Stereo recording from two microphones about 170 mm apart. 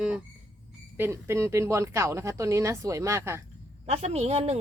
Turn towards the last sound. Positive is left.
turn(degrees=-35)  # may be behind; listen again after turning